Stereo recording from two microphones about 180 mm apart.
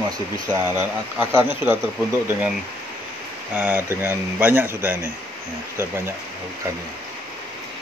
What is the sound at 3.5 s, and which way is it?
Speech, 10° right (ahead or behind).